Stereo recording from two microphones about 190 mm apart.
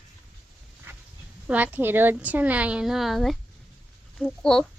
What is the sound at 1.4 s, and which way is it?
A woman's voice, 10° right (ahead or behind).